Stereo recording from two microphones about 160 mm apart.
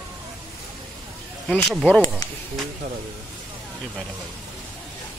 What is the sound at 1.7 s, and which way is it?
Speech, centre (ahead or behind).